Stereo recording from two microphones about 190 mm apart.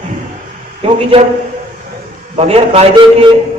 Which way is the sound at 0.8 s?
30° right (ahead or behind).